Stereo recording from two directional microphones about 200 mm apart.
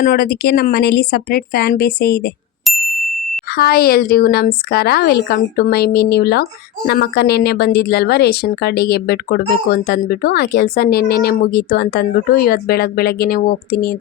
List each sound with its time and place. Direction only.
0.0 s a woman's voice: 45° left (ahead or behind)
2.6 s ding: centre (ahead or behind)
3.5 s a woman's voice: 50° left (ahead or behind)